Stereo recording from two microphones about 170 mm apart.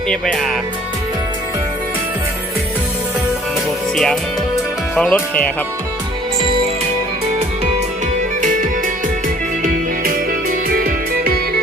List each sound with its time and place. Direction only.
0.1 s speech: 5° left (ahead or behind)
3.9 s speech: centre (ahead or behind)
10.0 s music: 55° right (ahead or behind)